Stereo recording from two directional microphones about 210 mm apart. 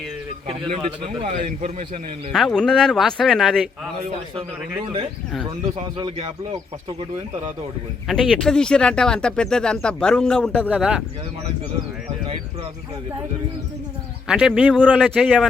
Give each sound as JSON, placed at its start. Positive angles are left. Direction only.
{"t": 0.4, "sound": "speech", "side_deg": -25}
{"t": 1.4, "sound": "a man's voice", "side_deg": -35}
{"t": 2.3, "sound": "speech", "side_deg": 0}
{"t": 6.0, "sound": "speech", "side_deg": -25}
{"t": 8.0, "sound": "speech", "side_deg": 0}
{"t": 14.3, "sound": "speech", "side_deg": -5}